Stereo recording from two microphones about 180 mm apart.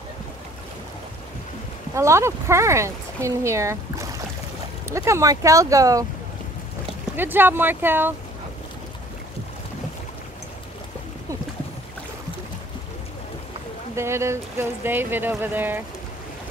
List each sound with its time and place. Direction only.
2.0 s speech: 15° right (ahead or behind)
7.2 s speech: 10° right (ahead or behind)
13.9 s speech: 15° right (ahead or behind)